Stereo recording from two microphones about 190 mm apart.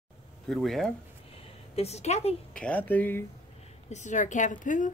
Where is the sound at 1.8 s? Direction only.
35° left (ahead or behind).